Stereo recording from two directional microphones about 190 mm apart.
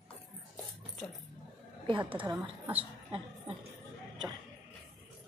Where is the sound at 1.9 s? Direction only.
25° right (ahead or behind).